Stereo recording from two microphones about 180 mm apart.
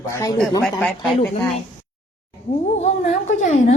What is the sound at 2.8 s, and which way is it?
Speech, 35° left (ahead or behind).